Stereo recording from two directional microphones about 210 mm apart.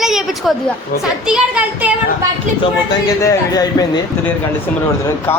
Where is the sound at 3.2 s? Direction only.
15° left (ahead or behind).